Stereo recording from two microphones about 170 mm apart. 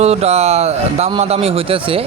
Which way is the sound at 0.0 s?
40° right (ahead or behind).